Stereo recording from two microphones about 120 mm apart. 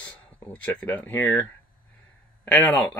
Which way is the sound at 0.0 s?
10° left (ahead or behind).